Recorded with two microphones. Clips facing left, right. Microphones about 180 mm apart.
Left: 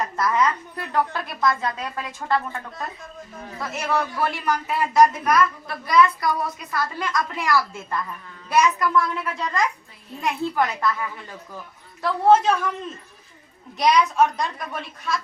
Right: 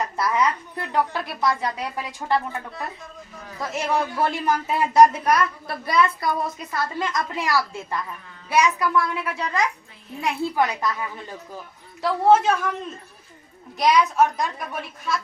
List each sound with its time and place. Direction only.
0.2 s a woman's voice: 10° right (ahead or behind)
3.6 s a woman's voice: 20° right (ahead or behind)
12.3 s a child's voice: 5° right (ahead or behind)
13.7 s a child's voice: centre (ahead or behind)